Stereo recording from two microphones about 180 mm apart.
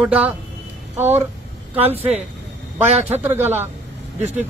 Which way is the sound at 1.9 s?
35° right (ahead or behind).